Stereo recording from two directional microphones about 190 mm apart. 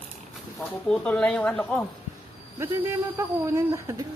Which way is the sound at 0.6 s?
5° left (ahead or behind).